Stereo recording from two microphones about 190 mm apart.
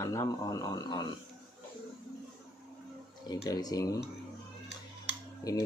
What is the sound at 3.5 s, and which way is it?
Speech, 20° left (ahead or behind).